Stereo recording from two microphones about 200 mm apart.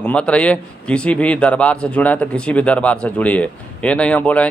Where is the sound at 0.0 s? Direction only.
5° left (ahead or behind).